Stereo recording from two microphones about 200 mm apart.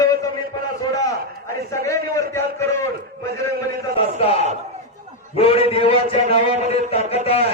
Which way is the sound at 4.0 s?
30° left (ahead or behind).